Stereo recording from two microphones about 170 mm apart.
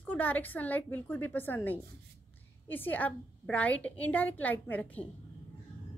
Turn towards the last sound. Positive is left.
turn(degrees=10)  # may be behind; listen again after turning